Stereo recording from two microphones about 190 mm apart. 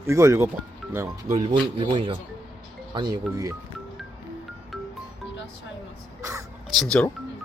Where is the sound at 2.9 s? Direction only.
25° right (ahead or behind).